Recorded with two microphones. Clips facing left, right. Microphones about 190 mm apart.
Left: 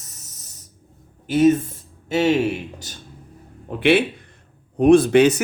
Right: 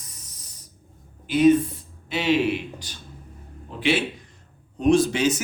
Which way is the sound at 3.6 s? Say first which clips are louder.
Left 6 dB; 60° left (ahead or behind).